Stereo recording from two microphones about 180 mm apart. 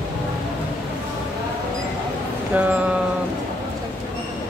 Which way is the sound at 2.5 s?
10° right (ahead or behind).